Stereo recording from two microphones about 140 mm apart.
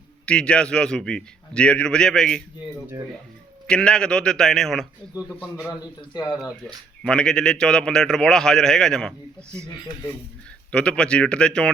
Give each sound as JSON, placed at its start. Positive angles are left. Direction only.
{"t": 0.3, "sound": "a man's voice", "side_deg": 5}
{"t": 3.7, "sound": "a man's voice", "side_deg": 5}
{"t": 7.0, "sound": "a man's voice", "side_deg": 5}
{"t": 10.7, "sound": "speech", "side_deg": 5}